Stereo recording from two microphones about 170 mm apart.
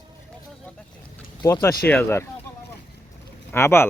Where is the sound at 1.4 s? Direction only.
25° left (ahead or behind).